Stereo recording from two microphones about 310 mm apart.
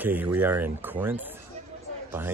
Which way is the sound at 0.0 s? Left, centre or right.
Centre.